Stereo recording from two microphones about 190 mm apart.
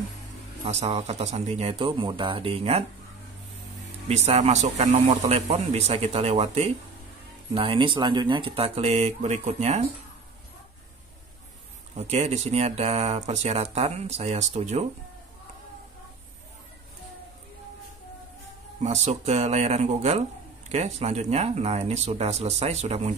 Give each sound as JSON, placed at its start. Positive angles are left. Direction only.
{"t": 0.7, "sound": "speech", "side_deg": -35}
{"t": 4.1, "sound": "speech", "side_deg": -35}
{"t": 12.0, "sound": "speech", "side_deg": -35}
{"t": 18.8, "sound": "speech", "side_deg": -35}